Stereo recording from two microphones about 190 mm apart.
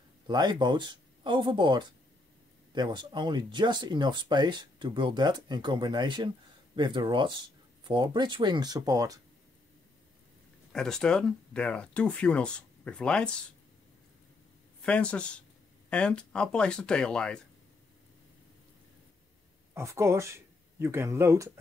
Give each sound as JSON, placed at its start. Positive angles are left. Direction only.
{"t": 0.3, "sound": "speech", "side_deg": -20}
{"t": 10.7, "sound": "speech", "side_deg": 5}
{"t": 14.8, "sound": "speech", "side_deg": 5}
{"t": 19.7, "sound": "speech", "side_deg": -15}